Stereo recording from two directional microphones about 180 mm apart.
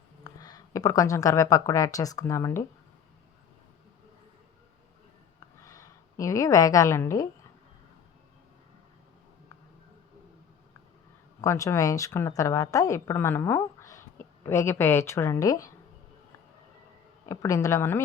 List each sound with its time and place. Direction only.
0.3 s speech: 20° left (ahead or behind)
5.6 s a sound: 15° left (ahead or behind)
11.3 s a woman's voice: 15° left (ahead or behind)
17.2 s a woman's voice: 15° left (ahead or behind)